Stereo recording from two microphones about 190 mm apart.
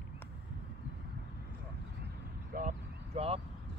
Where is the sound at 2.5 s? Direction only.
40° right (ahead or behind).